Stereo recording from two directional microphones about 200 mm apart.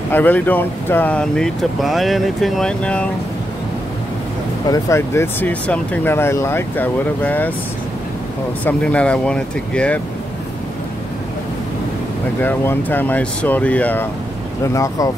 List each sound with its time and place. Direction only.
0.1 s speech: 10° left (ahead or behind)
4.6 s speech: 15° left (ahead or behind)
8.6 s speech: 5° left (ahead or behind)
12.4 s speech: 10° left (ahead or behind)